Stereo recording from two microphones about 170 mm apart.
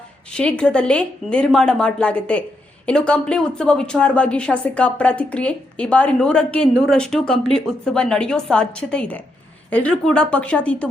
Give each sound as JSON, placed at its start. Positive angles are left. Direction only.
{"t": 0.3, "sound": "a woman's voice", "side_deg": 5}